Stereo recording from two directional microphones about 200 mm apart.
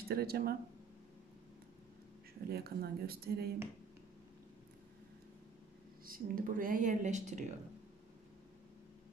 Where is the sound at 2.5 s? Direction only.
50° right (ahead or behind).